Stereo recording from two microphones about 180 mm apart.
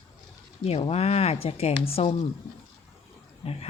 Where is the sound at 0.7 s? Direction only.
35° left (ahead or behind).